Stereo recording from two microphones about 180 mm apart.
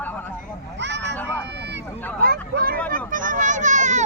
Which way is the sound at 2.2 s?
55° right (ahead or behind).